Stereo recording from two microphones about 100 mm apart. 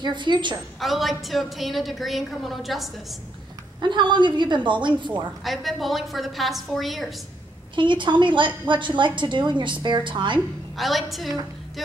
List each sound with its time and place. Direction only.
0.0 s a woman's voice: 50° right (ahead or behind)
0.7 s a woman's voice: centre (ahead or behind)
3.8 s a woman's voice: 50° right (ahead or behind)
5.4 s a woman's voice: centre (ahead or behind)
7.7 s a woman's voice: 55° right (ahead or behind)
10.8 s a woman's voice: centre (ahead or behind)